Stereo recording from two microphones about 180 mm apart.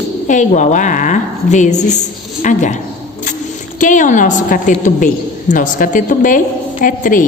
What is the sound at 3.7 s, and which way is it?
A woman's voice, 45° left (ahead or behind).